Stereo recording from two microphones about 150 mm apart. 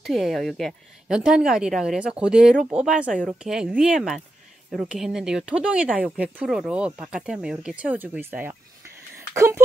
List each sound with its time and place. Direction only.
0.0 s speech: centre (ahead or behind); by 9.6 s 15° right (ahead or behind)